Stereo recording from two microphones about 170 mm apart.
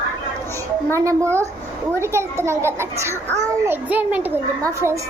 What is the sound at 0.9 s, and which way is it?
A woman's voice, 15° right (ahead or behind).